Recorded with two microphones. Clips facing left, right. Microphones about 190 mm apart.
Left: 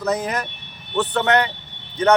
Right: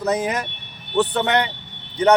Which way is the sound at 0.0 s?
15° right (ahead or behind).